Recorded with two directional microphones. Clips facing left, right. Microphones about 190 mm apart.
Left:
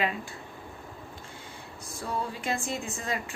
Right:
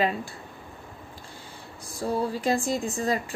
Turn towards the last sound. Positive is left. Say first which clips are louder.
# right 7 dB
turn(degrees=-35)  # may be behind; listen again after turning